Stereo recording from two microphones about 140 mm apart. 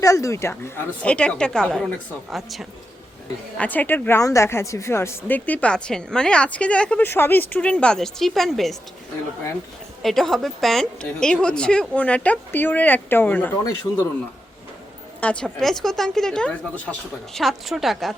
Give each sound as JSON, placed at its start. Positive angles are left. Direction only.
{"t": 0.0, "sound": "a woman's voice", "side_deg": 20}
{"t": 3.6, "sound": "speech", "side_deg": 10}
{"t": 10.0, "sound": "speech", "side_deg": 0}
{"t": 15.2, "sound": "a woman's voice", "side_deg": 10}